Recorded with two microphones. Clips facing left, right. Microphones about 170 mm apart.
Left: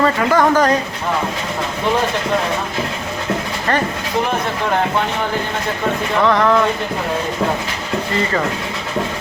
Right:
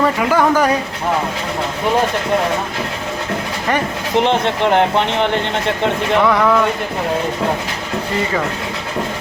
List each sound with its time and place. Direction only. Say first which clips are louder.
0.0 s speech: even; 10° right (ahead or behind)
4.2 s speech: right 5 dB; 20° right (ahead or behind)
6.2 s speech: left 2 dB; 10° right (ahead or behind)